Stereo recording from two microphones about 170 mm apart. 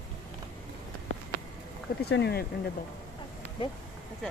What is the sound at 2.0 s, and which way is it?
Speech, 80° left.